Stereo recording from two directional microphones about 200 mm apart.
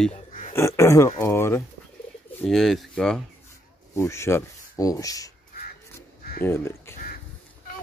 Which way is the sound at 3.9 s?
15° left (ahead or behind).